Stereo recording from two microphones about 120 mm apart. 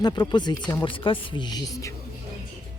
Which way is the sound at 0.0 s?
35° left (ahead or behind).